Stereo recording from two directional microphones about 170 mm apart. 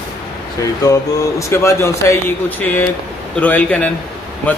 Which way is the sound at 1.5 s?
15° left (ahead or behind).